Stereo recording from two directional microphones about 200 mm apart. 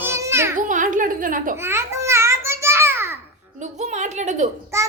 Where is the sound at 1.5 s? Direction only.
10° right (ahead or behind).